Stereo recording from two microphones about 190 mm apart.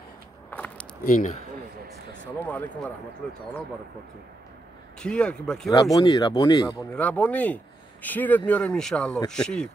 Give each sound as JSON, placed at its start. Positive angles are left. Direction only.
{"t": 0.5, "sound": "keys jangling", "side_deg": 10}
{"t": 1.0, "sound": "speech", "side_deg": 40}
{"t": 2.4, "sound": "speech", "side_deg": 10}
{"t": 5.0, "sound": "speech", "side_deg": 5}
{"t": 5.9, "sound": "speech", "side_deg": 20}
{"t": 6.9, "sound": "speech", "side_deg": 5}